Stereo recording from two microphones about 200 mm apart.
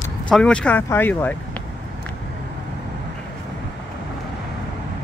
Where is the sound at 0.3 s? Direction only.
5° left (ahead or behind).